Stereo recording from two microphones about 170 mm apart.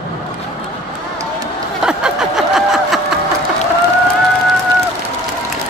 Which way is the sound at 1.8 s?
5° right (ahead or behind).